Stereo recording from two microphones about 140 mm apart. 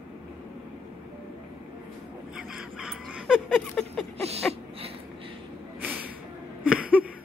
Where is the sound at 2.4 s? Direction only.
5° right (ahead or behind).